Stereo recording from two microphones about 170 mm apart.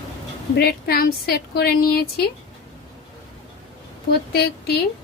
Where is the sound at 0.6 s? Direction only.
65° left (ahead or behind).